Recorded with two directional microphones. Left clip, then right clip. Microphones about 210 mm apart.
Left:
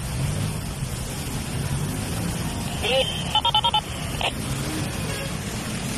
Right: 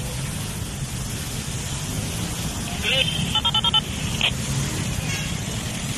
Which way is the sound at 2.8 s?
20° left (ahead or behind).